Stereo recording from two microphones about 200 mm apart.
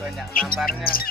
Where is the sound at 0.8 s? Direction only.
45° left (ahead or behind).